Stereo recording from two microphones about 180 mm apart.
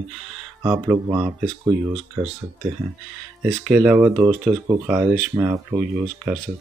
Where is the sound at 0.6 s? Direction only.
15° right (ahead or behind).